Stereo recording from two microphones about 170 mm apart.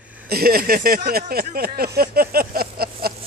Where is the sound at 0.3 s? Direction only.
60° right (ahead or behind).